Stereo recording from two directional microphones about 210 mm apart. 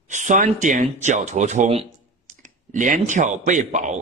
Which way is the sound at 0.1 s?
35° right (ahead or behind).